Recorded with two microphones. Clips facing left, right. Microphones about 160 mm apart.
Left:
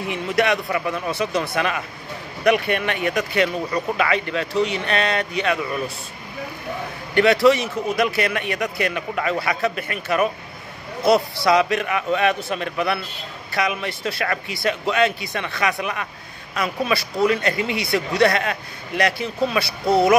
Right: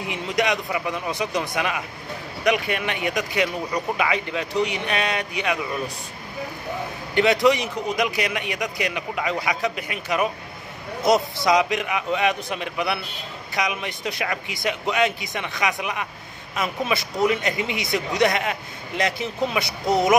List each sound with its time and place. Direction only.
0.1 s speech: 15° right (ahead or behind)
7.2 s speech: 20° right (ahead or behind)